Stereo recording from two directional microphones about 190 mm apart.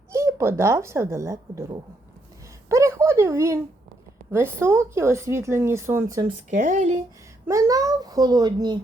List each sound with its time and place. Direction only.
0.1 s speech: 15° right (ahead or behind)
2.6 s a sound: 15° right (ahead or behind)
4.3 s speech: 10° right (ahead or behind)
6.5 s speech: 40° right (ahead or behind)
7.4 s a child's voice: 15° right (ahead or behind)